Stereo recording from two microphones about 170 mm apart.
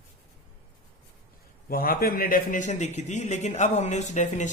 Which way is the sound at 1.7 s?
60° left (ahead or behind).